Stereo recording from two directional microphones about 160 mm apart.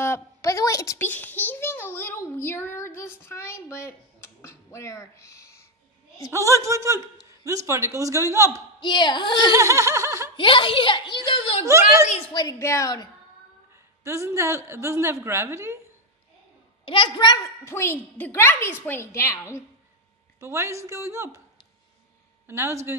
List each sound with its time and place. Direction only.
0.0 s a child's voice: 20° left (ahead or behind)
6.6 s speech: 20° right (ahead or behind)
8.7 s a woman's voice: 30° left (ahead or behind)
9.4 s laughter: 20° right (ahead or behind)
10.3 s a woman's voice: 30° left (ahead or behind)
12.4 s a woman's voice: 20° left (ahead or behind)
13.7 s a woman's voice: 15° right (ahead or behind)
16.8 s a child's voice: 30° left (ahead or behind); by 19.6 s 15° left (ahead or behind)
20.3 s a woman's voice: 15° right (ahead or behind)
22.5 s a woman's voice: 15° right (ahead or behind)